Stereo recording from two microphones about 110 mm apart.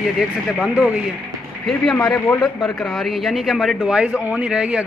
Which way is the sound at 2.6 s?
Centre (ahead or behind).